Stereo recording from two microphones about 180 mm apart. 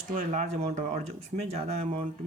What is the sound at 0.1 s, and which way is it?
Speech, 40° right (ahead or behind).